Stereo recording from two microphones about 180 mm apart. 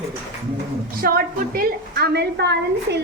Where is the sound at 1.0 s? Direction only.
55° right (ahead or behind).